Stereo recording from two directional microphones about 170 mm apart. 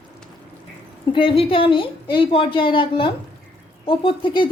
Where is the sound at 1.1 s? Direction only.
30° left (ahead or behind).